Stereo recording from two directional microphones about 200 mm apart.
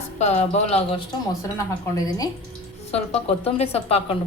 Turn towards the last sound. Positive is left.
turn(degrees=30)  # may be behind; listen again after turning